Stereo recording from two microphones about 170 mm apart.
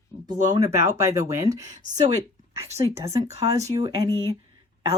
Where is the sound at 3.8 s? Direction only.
25° right (ahead or behind).